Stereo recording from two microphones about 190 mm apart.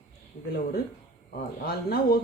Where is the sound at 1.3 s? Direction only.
55° left (ahead or behind).